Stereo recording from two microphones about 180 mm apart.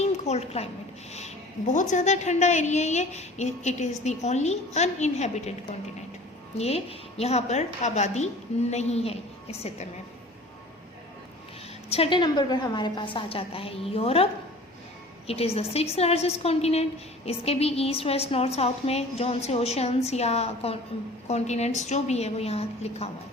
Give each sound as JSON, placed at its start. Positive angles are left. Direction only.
{"t": 0.0, "sound": "a sound", "side_deg": 35}
{"t": 1.1, "sound": "a woman's voice", "side_deg": 40}
{"t": 11.9, "sound": "a woman's voice", "side_deg": 30}
{"t": 15.3, "sound": "a woman's voice", "side_deg": 35}